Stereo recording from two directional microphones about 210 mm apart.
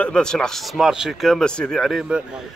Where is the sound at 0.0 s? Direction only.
5° left (ahead or behind).